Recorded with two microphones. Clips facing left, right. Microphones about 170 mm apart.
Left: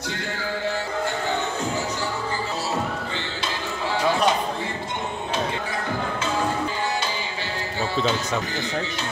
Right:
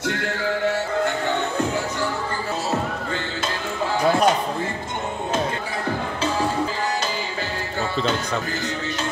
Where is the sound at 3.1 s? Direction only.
50° right (ahead or behind).